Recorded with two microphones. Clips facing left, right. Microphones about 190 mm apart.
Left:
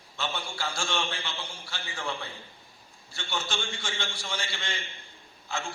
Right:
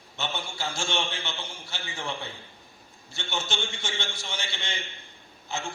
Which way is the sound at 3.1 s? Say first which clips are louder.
Right 1 dB; 20° right (ahead or behind).